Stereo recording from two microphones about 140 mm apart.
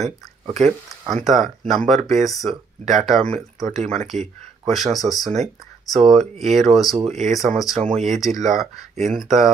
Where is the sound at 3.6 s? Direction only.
55° right (ahead or behind).